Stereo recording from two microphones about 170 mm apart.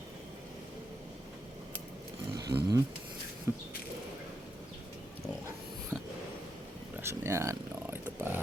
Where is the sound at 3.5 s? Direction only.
15° right (ahead or behind).